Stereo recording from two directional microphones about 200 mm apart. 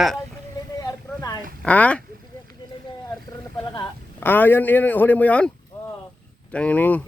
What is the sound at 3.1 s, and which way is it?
Speech, 20° left (ahead or behind).